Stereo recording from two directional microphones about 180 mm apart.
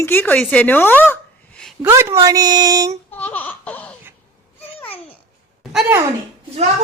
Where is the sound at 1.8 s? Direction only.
15° right (ahead or behind).